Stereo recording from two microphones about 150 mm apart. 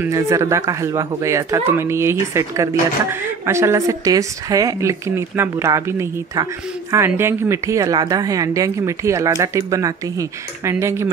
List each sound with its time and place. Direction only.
0.0 s speech: 20° right (ahead or behind)